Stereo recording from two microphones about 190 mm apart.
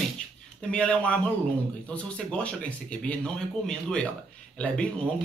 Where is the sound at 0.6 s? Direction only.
5° left (ahead or behind).